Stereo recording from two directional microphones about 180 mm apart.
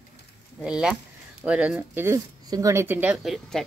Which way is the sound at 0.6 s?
5° right (ahead or behind).